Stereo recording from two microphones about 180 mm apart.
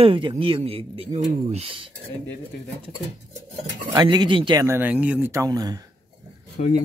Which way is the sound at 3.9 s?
25° right (ahead or behind).